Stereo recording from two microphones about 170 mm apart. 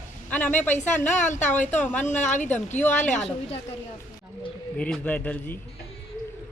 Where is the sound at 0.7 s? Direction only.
45° left (ahead or behind).